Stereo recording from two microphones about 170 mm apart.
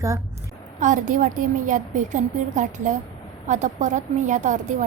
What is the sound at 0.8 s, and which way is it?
A woman's voice, 50° right (ahead or behind).